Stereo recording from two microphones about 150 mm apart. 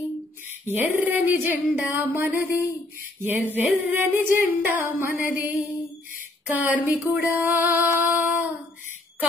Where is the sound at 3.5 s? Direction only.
10° right (ahead or behind).